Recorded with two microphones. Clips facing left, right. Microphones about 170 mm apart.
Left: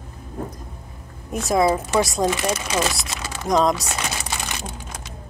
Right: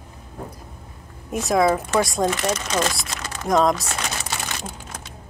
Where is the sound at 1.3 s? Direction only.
Centre (ahead or behind).